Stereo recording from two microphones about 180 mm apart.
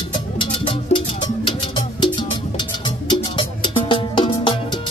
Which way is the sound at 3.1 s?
25° left (ahead or behind).